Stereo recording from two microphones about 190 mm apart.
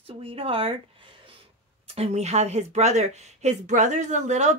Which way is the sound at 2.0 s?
35° right (ahead or behind).